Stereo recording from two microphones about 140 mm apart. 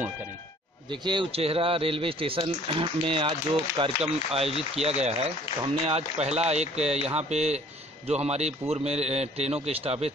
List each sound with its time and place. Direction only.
0.8 s a man's voice: 35° right (ahead or behind)